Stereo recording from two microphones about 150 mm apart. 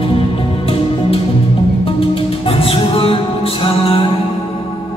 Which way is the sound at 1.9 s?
40° left (ahead or behind).